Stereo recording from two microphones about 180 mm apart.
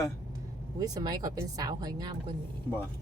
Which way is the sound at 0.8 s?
20° right (ahead or behind).